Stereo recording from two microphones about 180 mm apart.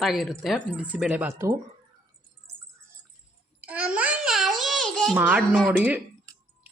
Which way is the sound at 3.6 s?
5° right (ahead or behind).